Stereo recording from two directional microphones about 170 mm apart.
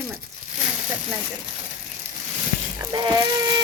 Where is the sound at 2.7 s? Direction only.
25° right (ahead or behind).